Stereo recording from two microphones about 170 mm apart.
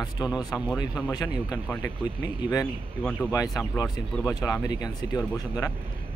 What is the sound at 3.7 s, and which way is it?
Speech, 20° left (ahead or behind).